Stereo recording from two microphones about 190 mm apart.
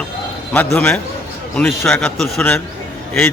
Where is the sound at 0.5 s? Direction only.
5° left (ahead or behind).